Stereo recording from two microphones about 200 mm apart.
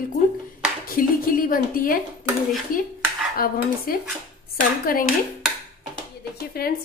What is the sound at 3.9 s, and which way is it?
A woman's voice, 45° left (ahead or behind).